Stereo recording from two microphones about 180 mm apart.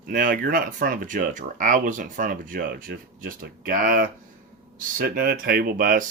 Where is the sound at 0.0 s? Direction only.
50° right (ahead or behind).